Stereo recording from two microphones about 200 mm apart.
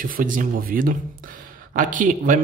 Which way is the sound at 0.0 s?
40° right (ahead or behind).